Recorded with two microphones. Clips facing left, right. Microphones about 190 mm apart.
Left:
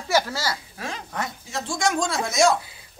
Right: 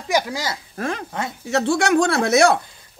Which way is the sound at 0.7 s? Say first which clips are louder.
Right 8 dB; 55° right (ahead or behind).